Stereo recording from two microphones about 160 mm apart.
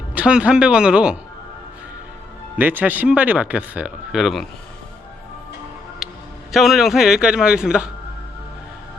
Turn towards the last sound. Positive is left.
turn(degrees=-5)  # may be behind; listen again after turning